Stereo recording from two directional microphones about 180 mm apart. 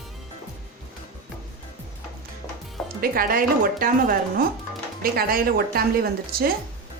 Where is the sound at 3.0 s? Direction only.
55° right (ahead or behind).